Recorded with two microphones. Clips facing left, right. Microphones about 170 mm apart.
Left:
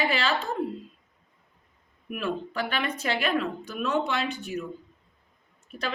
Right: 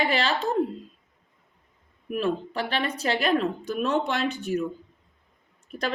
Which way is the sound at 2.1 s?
35° right (ahead or behind).